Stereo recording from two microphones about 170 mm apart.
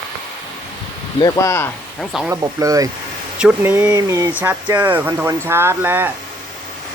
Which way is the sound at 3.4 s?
10° right (ahead or behind).